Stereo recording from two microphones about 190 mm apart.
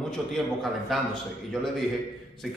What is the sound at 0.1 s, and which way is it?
A man's voice, centre (ahead or behind).